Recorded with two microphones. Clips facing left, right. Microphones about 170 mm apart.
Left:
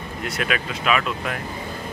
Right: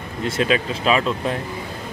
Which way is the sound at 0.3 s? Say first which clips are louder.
Right 6 dB; 30° right (ahead or behind).